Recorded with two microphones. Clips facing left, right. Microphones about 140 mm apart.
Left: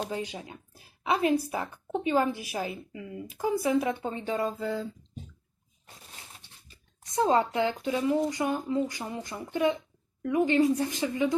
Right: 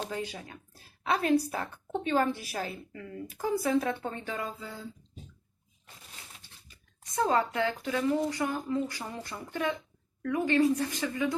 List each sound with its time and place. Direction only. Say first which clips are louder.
0.1 s a woman's voice: left 2 dB; 20° left (ahead or behind)
4.6 s speech: left 11 dB; 90° left
7.2 s speech: left 3 dB; 20° left (ahead or behind)